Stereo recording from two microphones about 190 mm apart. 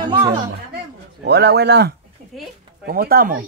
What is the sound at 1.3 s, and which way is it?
Speech, 60° right (ahead or behind).